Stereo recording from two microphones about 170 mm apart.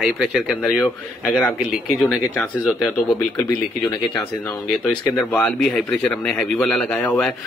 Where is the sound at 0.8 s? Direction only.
10° left (ahead or behind).